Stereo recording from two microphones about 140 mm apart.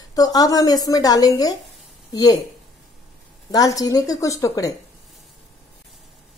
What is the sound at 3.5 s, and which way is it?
Speech, 25° left (ahead or behind).